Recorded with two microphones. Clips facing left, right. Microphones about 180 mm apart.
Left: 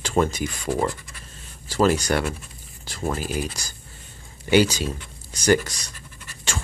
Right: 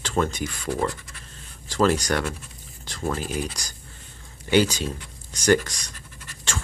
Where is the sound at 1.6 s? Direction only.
10° left (ahead or behind).